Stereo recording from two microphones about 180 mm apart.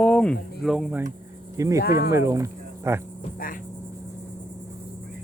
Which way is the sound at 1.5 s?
15° right (ahead or behind).